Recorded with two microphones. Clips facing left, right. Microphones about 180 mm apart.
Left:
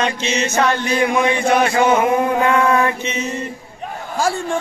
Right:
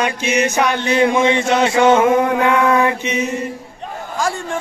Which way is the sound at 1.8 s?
85° right.